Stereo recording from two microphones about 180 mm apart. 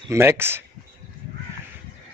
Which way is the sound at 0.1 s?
15° right (ahead or behind).